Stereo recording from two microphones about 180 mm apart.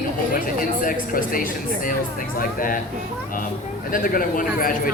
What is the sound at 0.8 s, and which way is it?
A man's voice, 50° left (ahead or behind).